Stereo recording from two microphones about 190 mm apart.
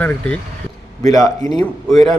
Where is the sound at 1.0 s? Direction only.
20° left (ahead or behind).